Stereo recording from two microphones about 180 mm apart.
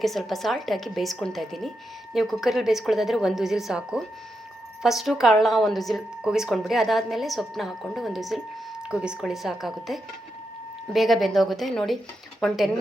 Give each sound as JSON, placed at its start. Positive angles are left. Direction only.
{"t": 0.0, "sound": "speech", "side_deg": 0}